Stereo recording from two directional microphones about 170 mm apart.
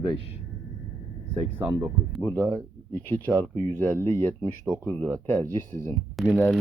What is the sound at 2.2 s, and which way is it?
Speech, 10° left (ahead or behind).